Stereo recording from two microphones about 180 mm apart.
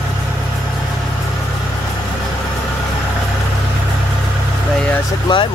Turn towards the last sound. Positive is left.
turn(degrees=25)  # may be behind; listen again after turning